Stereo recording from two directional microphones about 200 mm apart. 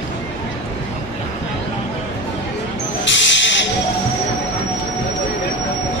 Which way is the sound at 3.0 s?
65° left (ahead or behind).